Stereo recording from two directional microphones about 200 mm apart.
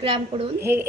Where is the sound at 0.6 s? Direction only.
10° right (ahead or behind).